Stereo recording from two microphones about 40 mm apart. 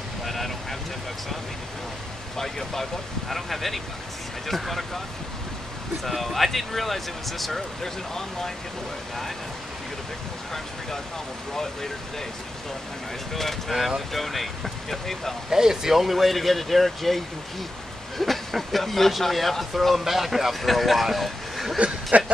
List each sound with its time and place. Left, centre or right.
0.2 s vehicle: centre
2.3 s speech: centre
6.0 s speech: centre
13.3 s speech: centre
15.5 s speech: centre
21.7 s a sound: right